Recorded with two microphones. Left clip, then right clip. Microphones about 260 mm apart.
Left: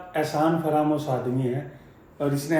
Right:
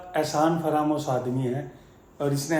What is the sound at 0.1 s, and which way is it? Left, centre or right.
A man's voice, centre.